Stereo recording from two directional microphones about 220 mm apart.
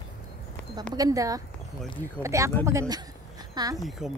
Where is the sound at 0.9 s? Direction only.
15° right (ahead or behind).